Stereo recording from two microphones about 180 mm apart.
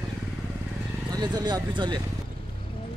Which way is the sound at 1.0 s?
20° right (ahead or behind).